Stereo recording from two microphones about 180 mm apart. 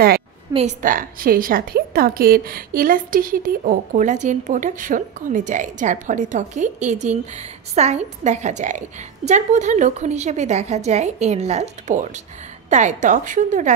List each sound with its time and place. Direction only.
0.5 s a woman's voice: 35° right (ahead or behind)
0.8 s a woman's voice: 50° right (ahead or behind)